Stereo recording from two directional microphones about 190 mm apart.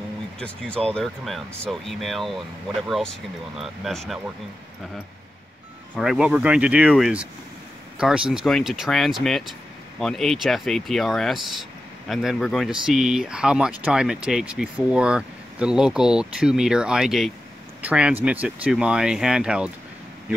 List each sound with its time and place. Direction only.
0.4 s speech: 5° left (ahead or behind)
5.9 s speech: 5° right (ahead or behind)